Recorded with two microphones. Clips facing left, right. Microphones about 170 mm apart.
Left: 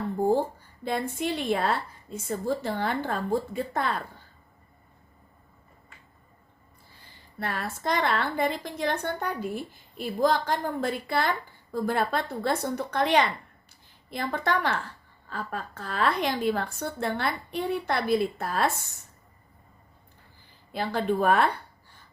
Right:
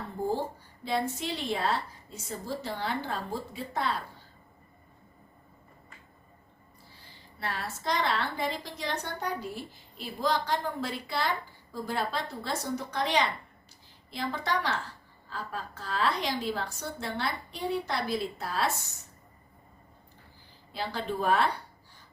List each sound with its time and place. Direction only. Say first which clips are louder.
0.9 s a woman's voice: left 2 dB; 55° left (ahead or behind)
7.3 s a woman's voice: left 4 dB; 55° left (ahead or behind)
20.7 s a woman's voice: left 6 dB; 55° left (ahead or behind)